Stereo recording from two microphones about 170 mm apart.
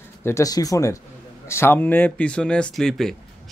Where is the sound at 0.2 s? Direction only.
15° left (ahead or behind).